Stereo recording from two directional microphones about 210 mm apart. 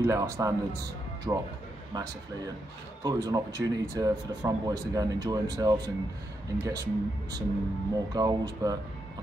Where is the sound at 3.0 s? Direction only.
15° right (ahead or behind).